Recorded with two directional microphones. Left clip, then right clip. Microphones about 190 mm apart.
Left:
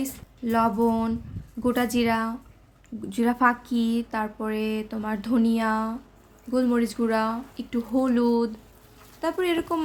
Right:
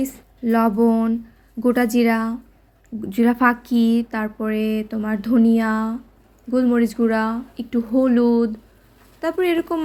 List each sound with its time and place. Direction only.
0.0 s speech: 15° right (ahead or behind)